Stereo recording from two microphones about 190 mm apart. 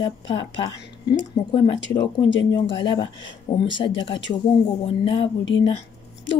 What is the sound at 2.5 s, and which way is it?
Speech, 25° left (ahead or behind).